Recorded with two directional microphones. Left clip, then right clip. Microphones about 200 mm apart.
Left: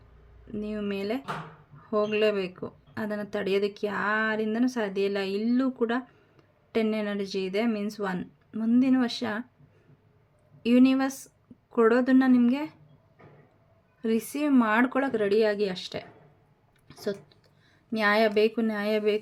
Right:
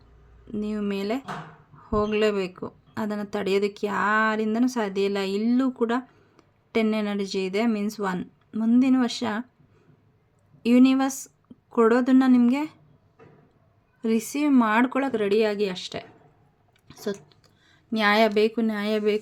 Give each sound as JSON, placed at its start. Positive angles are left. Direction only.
{"t": 0.5, "sound": "speech", "side_deg": -15}
{"t": 10.6, "sound": "speech", "side_deg": -15}
{"t": 14.0, "sound": "speech", "side_deg": -15}